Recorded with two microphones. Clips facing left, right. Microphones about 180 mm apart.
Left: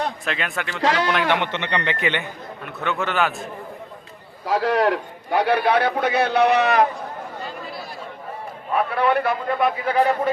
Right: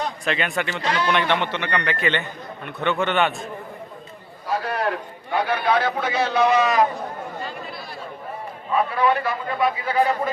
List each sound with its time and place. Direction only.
0.3 s speech: centre (ahead or behind)
0.8 s speech: 90° left
1.3 s a man's voice: 20° left (ahead or behind); by 3.4 s centre (ahead or behind)
4.4 s a man's voice: 90° left; by 6.8 s 65° left (ahead or behind)
8.7 s a man's voice: 60° left (ahead or behind)